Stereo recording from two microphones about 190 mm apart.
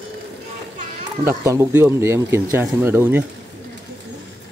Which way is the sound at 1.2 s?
15° right (ahead or behind).